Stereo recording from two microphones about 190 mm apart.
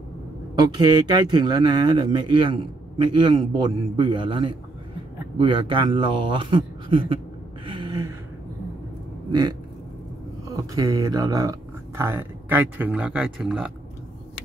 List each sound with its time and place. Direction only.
0.7 s speech: 20° right (ahead or behind)
7.6 s gasp: 25° right (ahead or behind)
9.3 s speech: 20° right (ahead or behind); by 13.7 s 5° right (ahead or behind)